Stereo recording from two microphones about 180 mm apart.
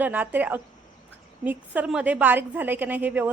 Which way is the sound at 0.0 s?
10° right (ahead or behind).